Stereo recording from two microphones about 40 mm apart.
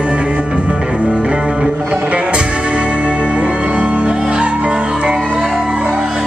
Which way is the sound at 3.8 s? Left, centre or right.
Right.